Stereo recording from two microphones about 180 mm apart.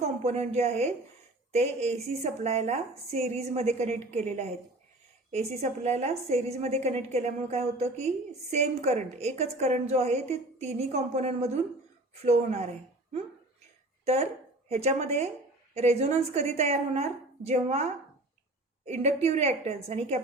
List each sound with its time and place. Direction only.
0.0 s a woman's voice: 35° right (ahead or behind)
14.0 s a woman's voice: 35° right (ahead or behind)
18.9 s a woman's voice: 35° right (ahead or behind)